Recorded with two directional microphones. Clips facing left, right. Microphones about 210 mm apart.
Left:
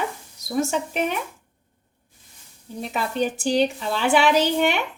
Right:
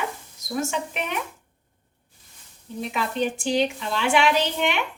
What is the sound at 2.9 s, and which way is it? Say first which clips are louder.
A woman's voice: left 2 dB; 40° left (ahead or behind).